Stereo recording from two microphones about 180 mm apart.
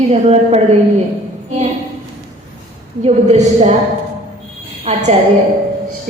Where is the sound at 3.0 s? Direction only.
40° right (ahead or behind).